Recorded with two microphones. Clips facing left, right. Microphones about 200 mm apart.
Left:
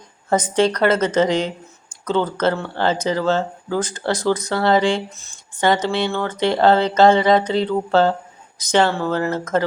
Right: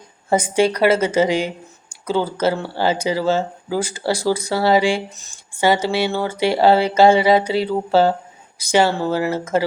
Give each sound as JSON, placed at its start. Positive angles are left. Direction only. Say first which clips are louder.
{"t": 0.3, "sound": "speech", "louder": "right 1 dB", "side_deg": -10}